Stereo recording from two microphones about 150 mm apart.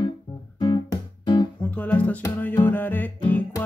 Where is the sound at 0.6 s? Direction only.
30° left (ahead or behind).